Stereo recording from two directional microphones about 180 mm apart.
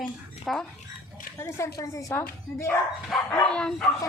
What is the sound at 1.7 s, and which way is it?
A woman's voice, 20° left (ahead or behind).